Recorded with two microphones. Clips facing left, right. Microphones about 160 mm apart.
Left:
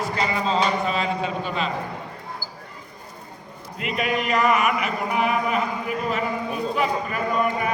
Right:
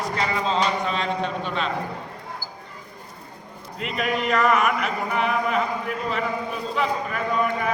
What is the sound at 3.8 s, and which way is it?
Speech, 5° left (ahead or behind).